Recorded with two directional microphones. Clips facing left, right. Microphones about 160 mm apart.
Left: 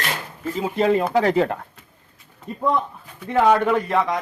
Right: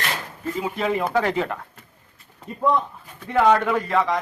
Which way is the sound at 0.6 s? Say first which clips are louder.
Left 5 dB; 25° left (ahead or behind).